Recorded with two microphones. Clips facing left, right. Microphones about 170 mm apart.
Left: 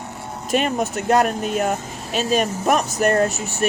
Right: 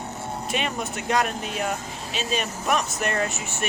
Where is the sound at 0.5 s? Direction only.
45° left (ahead or behind).